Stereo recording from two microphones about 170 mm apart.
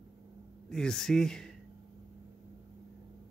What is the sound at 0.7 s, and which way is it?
Speech, 5° left (ahead or behind).